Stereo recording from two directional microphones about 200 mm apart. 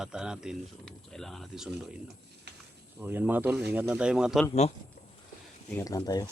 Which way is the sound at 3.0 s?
10° right (ahead or behind).